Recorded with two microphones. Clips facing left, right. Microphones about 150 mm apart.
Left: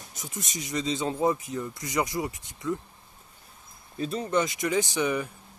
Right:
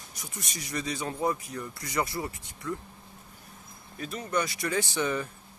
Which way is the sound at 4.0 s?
30° left (ahead or behind).